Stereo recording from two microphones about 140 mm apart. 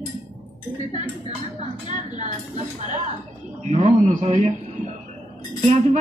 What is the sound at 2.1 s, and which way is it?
A woman's voice, 60° right (ahead or behind).